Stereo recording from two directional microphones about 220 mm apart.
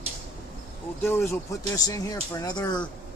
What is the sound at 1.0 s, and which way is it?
Speech, 10° left (ahead or behind).